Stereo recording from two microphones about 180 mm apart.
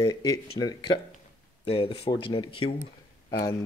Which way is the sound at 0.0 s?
20° left (ahead or behind).